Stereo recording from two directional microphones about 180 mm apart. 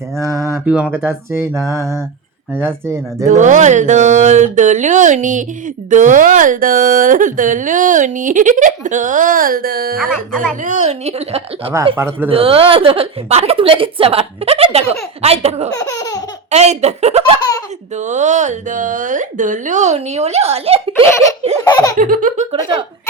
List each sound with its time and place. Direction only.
0.2 s mantra: 15° right (ahead or behind)
3.2 s speech: 45° right (ahead or behind)
10.6 s speech: 40° right (ahead or behind)
11.9 s mantra: 15° right (ahead or behind)
12.3 s speech: 30° right (ahead or behind)
15.8 s laughter: 20° left (ahead or behind)
16.5 s speech: 40° right (ahead or behind)
21.7 s laughter: 20° left (ahead or behind)
21.9 s speech: 50° right (ahead or behind)